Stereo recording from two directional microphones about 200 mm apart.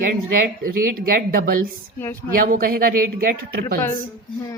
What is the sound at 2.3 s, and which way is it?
Speech, 45° right (ahead or behind).